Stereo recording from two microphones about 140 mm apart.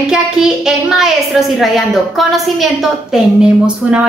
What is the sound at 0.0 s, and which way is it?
A woman's voice, 5° right (ahead or behind).